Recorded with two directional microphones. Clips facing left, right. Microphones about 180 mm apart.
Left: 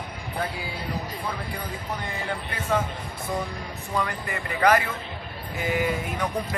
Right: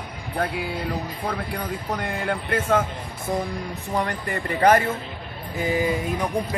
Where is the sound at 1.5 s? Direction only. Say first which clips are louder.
Right 5 dB; 60° right (ahead or behind).